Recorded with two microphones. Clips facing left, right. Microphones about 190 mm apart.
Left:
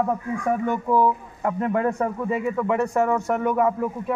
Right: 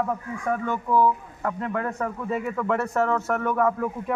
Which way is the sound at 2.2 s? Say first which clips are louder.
Left 1 dB; 10° left (ahead or behind).